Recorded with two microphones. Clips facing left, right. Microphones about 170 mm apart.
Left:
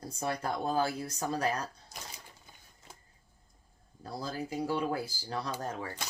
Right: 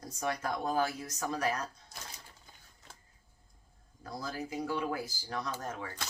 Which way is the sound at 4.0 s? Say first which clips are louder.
Left 2 dB; 30° left (ahead or behind).